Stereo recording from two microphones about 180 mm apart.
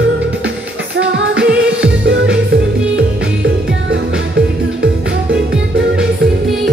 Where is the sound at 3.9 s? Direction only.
65° right (ahead or behind).